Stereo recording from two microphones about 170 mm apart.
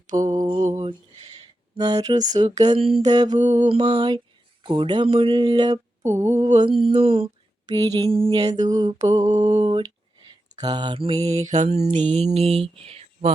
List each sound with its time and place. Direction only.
0.2 s mantra: 25° right (ahead or behind)
0.7 s a sound: 30° right (ahead or behind)
1.7 s mantra: 25° right (ahead or behind)
6.6 s mantra: 30° right (ahead or behind)
7.7 s mantra: 20° right (ahead or behind)
10.5 s mantra: 25° right (ahead or behind)